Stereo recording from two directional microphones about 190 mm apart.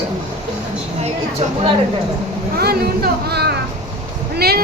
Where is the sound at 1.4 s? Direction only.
35° right (ahead or behind).